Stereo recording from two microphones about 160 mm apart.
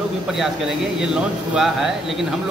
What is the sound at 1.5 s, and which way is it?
Speech, 5° right (ahead or behind).